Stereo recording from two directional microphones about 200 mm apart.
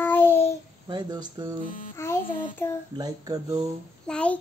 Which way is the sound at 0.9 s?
20° right (ahead or behind).